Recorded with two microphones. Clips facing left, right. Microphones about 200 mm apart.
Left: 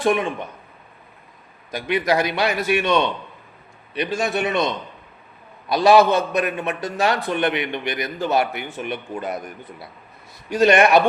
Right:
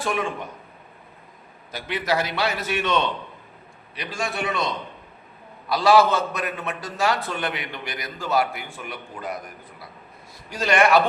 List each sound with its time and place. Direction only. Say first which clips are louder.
0.0 s a man's voice: left 6 dB; 20° left (ahead or behind)
1.7 s a man's voice: left 5 dB; 15° left (ahead or behind)